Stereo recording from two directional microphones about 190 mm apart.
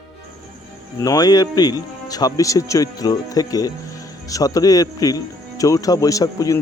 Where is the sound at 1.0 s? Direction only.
20° left (ahead or behind).